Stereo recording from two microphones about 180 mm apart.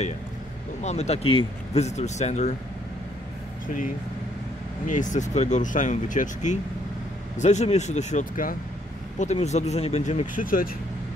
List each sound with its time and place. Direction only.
0.8 s speech: 35° left (ahead or behind)
4.8 s speech: 45° left (ahead or behind)